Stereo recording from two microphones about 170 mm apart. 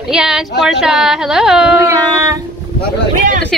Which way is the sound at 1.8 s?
15° right (ahead or behind).